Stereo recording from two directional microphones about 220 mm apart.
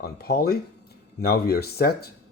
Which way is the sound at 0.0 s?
45° left (ahead or behind).